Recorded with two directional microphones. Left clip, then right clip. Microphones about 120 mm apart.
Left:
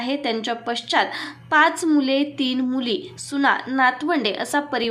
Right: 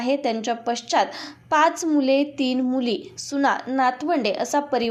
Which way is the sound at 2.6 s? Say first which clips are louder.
Even; 30° right (ahead or behind).